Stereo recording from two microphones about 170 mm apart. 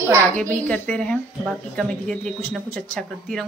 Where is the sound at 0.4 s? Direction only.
5° left (ahead or behind).